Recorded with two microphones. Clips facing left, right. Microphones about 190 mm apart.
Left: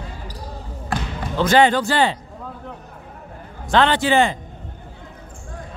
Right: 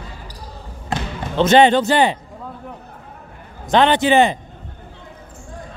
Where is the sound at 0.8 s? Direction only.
25° right (ahead or behind).